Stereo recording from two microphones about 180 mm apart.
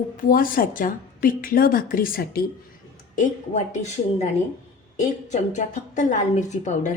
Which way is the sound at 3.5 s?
40° left (ahead or behind).